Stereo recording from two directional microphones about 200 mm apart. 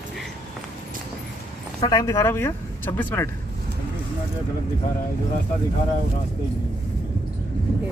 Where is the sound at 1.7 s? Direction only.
20° left (ahead or behind).